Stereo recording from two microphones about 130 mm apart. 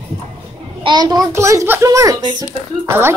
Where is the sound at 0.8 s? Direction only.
30° right (ahead or behind).